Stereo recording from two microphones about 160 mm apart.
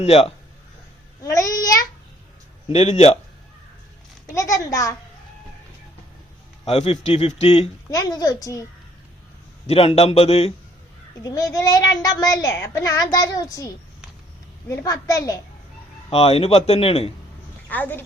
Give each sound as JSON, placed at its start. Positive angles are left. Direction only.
{"t": 0.0, "sound": "a man's voice", "side_deg": 40}
{"t": 1.2, "sound": "child singing", "side_deg": 20}
{"t": 2.6, "sound": "speech", "side_deg": 40}
{"t": 4.4, "sound": "a child's voice", "side_deg": 20}
{"t": 6.7, "sound": "a man's voice", "side_deg": 40}
{"t": 7.9, "sound": "a child's voice", "side_deg": 20}
{"t": 9.6, "sound": "a man's voice", "side_deg": 40}
{"t": 11.2, "sound": "a child's voice", "side_deg": 20}
{"t": 14.7, "sound": "a child's voice", "side_deg": 20}
{"t": 16.0, "sound": "a man's voice", "side_deg": 40}
{"t": 17.7, "sound": "a woman's voice", "side_deg": 10}